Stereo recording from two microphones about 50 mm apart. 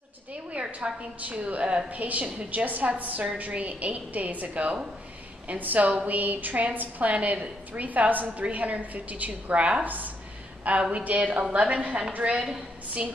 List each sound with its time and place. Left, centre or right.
0.5 s a sound: right
1.2 s a woman's voice: right
4.6 s a woman's voice: right
5.5 s a woman's voice: right
9.8 s a woman's voice: right